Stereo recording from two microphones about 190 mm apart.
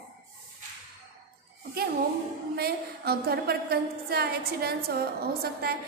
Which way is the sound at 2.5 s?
55° right (ahead or behind).